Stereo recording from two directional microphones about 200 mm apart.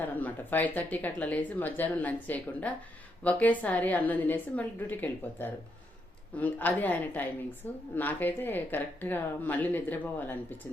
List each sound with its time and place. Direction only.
0.0 s speech: 10° left (ahead or behind)